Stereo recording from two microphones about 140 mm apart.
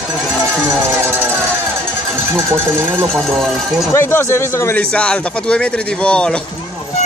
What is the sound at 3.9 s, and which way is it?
Speech, 20° left (ahead or behind).